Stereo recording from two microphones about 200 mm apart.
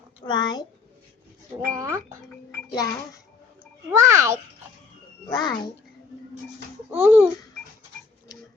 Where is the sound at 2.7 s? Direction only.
20° left (ahead or behind).